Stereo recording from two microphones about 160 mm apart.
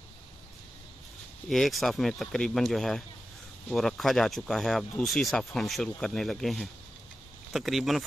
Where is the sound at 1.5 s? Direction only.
Centre (ahead or behind).